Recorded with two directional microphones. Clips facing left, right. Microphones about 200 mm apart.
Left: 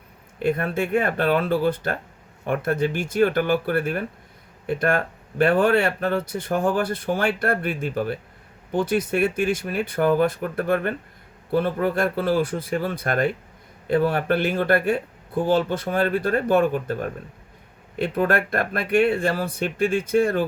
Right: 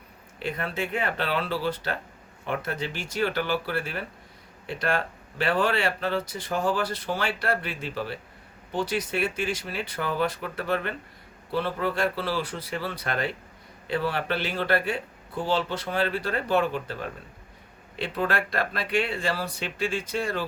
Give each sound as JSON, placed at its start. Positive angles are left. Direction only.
{"t": 0.3, "sound": "speech", "side_deg": 50}